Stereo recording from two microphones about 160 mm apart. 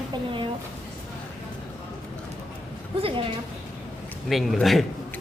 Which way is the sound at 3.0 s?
35° right (ahead or behind).